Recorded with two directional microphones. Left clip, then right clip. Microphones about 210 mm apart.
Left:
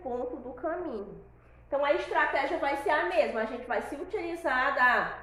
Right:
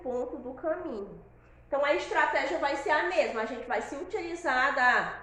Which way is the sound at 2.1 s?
10° left (ahead or behind).